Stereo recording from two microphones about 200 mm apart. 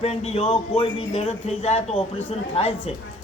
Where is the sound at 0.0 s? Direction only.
30° left (ahead or behind).